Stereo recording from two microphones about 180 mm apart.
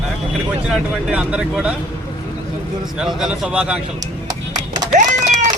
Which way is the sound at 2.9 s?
5° right (ahead or behind).